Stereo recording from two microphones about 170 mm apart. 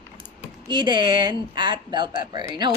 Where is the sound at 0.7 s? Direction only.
25° right (ahead or behind).